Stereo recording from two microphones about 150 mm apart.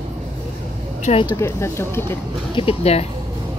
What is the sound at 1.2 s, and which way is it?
Speech, 20° left (ahead or behind).